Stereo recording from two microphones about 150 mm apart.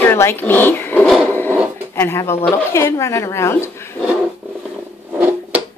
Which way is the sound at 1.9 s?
15° left (ahead or behind).